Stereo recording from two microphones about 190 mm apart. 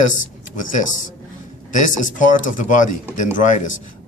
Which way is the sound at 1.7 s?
40° left (ahead or behind).